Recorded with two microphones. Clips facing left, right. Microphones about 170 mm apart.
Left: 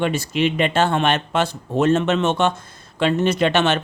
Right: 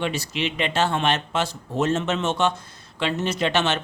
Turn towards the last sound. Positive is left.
turn(degrees=55)  # may be behind; listen again after turning